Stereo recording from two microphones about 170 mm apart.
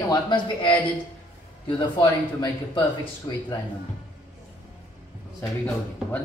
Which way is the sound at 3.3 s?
25° left (ahead or behind).